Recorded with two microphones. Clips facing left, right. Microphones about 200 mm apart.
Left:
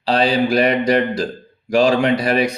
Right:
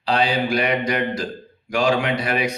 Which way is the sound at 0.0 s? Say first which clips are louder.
Left 4 dB; 35° left (ahead or behind).